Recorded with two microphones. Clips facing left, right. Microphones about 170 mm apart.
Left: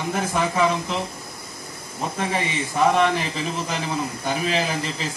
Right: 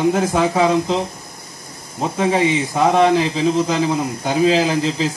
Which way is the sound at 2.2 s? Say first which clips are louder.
Right 10 dB; 80° right.